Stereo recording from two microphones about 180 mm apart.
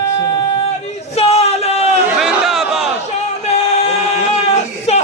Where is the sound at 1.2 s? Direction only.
35° left (ahead or behind).